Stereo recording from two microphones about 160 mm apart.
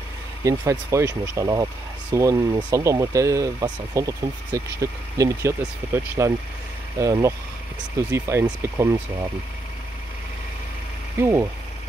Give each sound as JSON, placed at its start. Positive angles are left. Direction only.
{"t": 0.4, "sound": "speech", "side_deg": -20}
{"t": 11.1, "sound": "speech", "side_deg": -15}